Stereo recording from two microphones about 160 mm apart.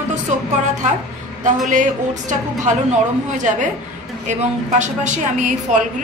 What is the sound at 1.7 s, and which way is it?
A woman's voice, 50° right (ahead or behind).